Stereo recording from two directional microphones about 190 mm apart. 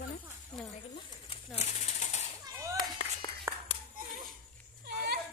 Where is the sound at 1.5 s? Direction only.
35° left (ahead or behind).